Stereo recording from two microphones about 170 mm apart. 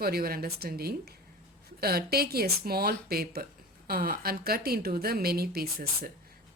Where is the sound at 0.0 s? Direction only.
65° right (ahead or behind).